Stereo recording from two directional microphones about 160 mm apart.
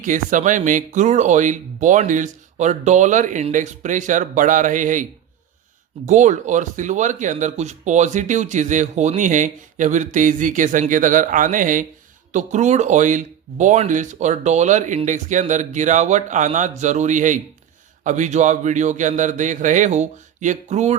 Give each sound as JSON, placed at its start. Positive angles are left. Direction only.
{"t": 0.0, "sound": "speech", "side_deg": -55}
{"t": 6.1, "sound": "speech", "side_deg": -50}